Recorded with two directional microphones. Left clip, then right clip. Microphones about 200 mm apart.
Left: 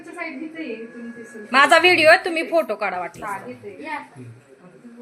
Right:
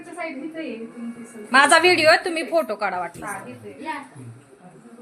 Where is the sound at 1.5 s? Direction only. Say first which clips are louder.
Left 1 dB; 5° right (ahead or behind).